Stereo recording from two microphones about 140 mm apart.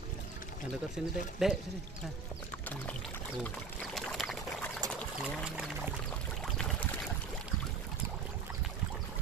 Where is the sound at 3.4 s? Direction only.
5° left (ahead or behind).